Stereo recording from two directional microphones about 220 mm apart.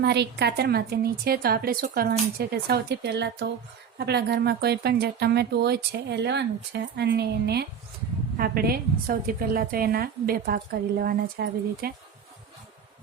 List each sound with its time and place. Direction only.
0.0 s speech: 50° right (ahead or behind)